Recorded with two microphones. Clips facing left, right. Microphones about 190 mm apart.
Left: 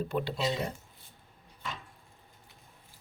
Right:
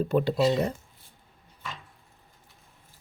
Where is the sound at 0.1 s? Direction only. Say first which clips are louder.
Right 11 dB; 45° right (ahead or behind).